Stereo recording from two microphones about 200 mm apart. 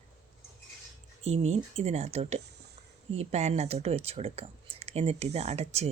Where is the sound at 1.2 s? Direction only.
30° right (ahead or behind).